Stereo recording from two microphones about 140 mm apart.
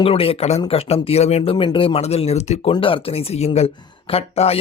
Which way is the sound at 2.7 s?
40° left (ahead or behind).